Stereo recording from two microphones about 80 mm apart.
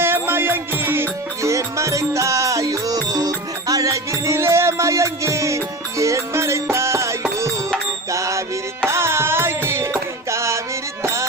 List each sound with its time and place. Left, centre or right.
0.0 s music: right